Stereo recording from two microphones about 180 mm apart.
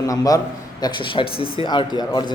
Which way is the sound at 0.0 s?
20° left (ahead or behind).